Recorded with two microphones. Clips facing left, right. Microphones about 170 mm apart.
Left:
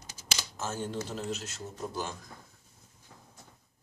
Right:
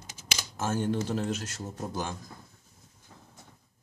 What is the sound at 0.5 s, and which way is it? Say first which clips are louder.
Speech: right 7 dB; 55° right (ahead or behind).